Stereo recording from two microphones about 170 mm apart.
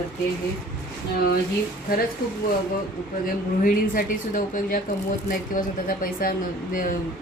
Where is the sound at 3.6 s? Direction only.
55° left (ahead or behind).